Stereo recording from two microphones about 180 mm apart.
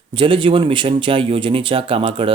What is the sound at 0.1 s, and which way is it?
Speech, 30° right (ahead or behind).